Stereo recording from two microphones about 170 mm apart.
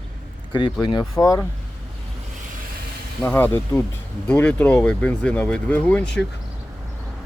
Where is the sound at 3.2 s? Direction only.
10° left (ahead or behind).